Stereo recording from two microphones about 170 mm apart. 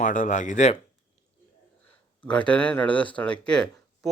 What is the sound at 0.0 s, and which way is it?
Speech, 50° left (ahead or behind).